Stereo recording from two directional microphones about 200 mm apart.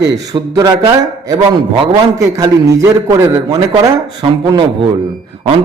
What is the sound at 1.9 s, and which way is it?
A man's voice, 15° right (ahead or behind).